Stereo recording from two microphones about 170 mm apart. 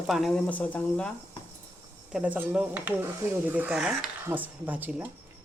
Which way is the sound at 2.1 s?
10° right (ahead or behind).